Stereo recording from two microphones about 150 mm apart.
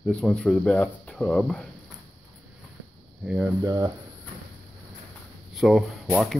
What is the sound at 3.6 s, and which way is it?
Speech, 25° right (ahead or behind).